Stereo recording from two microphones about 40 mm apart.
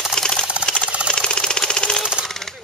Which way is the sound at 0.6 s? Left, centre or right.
Centre.